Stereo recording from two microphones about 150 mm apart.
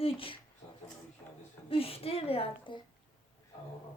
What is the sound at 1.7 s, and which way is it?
A woman's voice, 40° left (ahead or behind).